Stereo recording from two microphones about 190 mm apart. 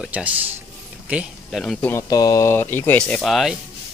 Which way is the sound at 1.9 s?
20° left (ahead or behind).